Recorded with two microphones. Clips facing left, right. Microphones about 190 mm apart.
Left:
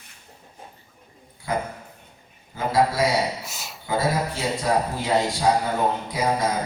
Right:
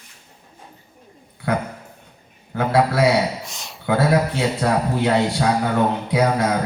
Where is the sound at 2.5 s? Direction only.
65° right (ahead or behind).